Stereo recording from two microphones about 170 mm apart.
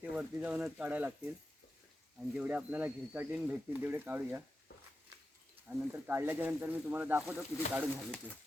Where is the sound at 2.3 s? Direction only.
5° right (ahead or behind).